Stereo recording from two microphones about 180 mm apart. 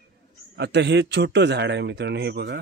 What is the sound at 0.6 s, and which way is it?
A man's voice, 70° right (ahead or behind).